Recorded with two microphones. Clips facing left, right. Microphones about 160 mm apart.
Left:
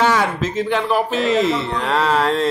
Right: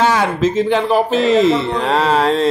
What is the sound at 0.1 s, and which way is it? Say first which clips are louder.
Speech: right 4 dB; 25° right (ahead or behind).